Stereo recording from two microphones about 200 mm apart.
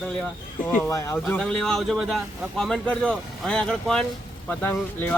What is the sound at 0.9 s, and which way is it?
Speech, 15° left (ahead or behind).